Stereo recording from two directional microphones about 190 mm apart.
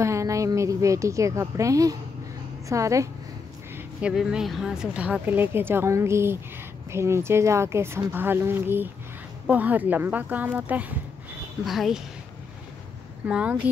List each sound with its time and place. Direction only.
0.0 s speech: 15° right (ahead or behind)
3.7 s speech: 5° right (ahead or behind)
13.3 s speech: 5° right (ahead or behind)